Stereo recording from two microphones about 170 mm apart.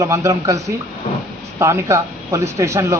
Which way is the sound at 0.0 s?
20° right (ahead or behind).